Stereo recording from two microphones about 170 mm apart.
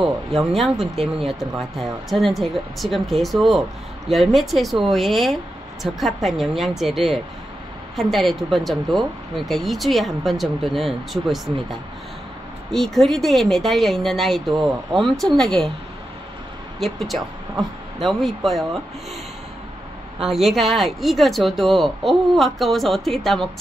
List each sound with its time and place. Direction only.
0.0 s speech: centre (ahead or behind)
12.7 s speech: centre (ahead or behind)
16.8 s speech: centre (ahead or behind)
20.2 s speech: centre (ahead or behind)